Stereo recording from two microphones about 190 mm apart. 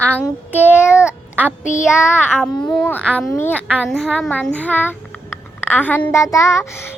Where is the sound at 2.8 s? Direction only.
10° left (ahead or behind).